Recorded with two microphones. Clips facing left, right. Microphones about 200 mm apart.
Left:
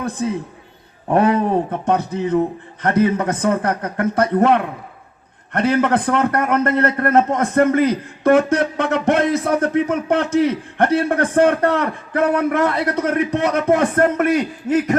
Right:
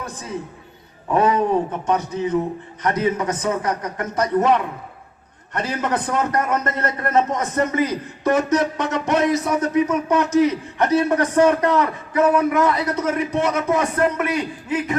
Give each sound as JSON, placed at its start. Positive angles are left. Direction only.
{"t": 1.1, "sound": "a man's voice", "side_deg": 60}